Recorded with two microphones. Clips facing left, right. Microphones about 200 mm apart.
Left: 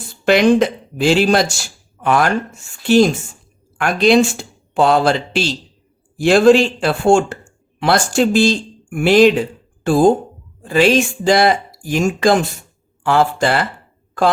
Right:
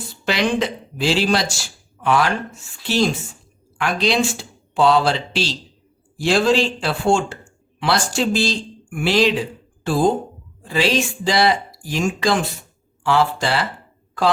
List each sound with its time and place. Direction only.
0.3 s speech: 50° left (ahead or behind)